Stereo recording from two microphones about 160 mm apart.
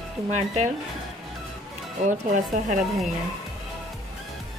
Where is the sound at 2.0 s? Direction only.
50° right (ahead or behind).